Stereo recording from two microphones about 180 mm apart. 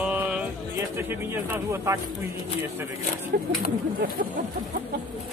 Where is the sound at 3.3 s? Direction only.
60° right (ahead or behind).